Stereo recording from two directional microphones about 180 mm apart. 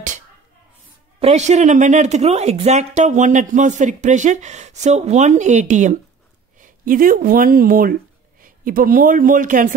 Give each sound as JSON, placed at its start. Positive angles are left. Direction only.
{"t": 1.2, "sound": "a woman's voice", "side_deg": -40}